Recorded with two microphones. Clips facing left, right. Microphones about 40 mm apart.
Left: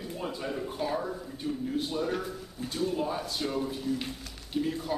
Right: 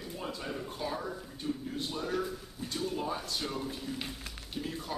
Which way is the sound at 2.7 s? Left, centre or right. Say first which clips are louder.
Left 4 dB; centre.